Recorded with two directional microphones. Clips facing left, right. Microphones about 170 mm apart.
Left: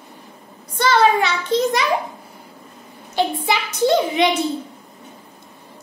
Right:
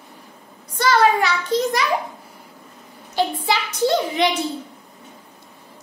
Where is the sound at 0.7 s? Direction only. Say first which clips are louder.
Left 1 dB; 25° left (ahead or behind).